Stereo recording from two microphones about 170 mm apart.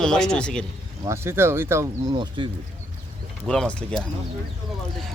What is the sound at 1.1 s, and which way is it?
Speech, 15° right (ahead or behind).